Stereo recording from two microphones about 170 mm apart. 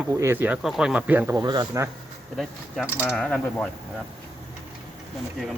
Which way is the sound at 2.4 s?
Centre (ahead or behind).